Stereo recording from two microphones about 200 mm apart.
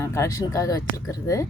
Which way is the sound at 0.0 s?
15° left (ahead or behind).